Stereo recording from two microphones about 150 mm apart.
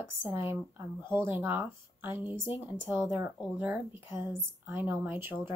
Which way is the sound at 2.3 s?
30° left (ahead or behind).